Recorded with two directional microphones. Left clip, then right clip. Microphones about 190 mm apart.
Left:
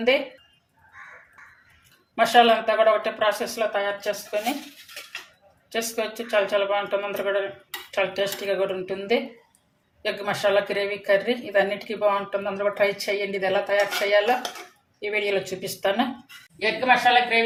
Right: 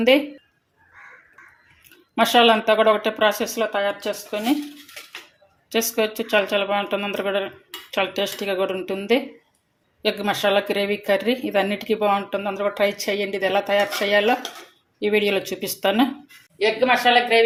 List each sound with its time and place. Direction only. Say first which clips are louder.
2.1 s speech: right 1 dB; 45° right (ahead or behind)
5.7 s a woman's voice: right 5 dB; 50° right (ahead or behind)